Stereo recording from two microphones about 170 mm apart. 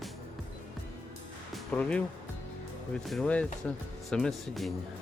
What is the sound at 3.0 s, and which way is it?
Speech, 5° left (ahead or behind).